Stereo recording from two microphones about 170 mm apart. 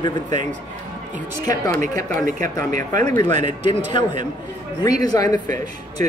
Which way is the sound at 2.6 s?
45° right (ahead or behind).